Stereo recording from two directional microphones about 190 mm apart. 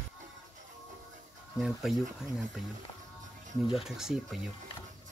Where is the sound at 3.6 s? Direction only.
30° left (ahead or behind).